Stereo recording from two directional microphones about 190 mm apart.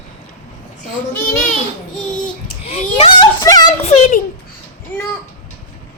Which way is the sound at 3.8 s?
35° left (ahead or behind).